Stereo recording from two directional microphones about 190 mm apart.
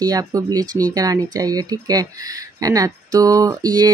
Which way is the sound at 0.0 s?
20° right (ahead or behind).